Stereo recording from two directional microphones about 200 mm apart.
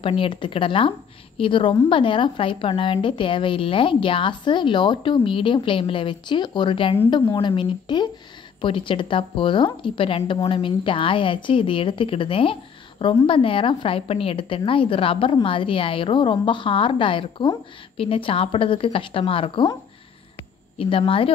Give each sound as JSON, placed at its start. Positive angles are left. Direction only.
{"t": 0.0, "sound": "a woman's voice", "side_deg": 25}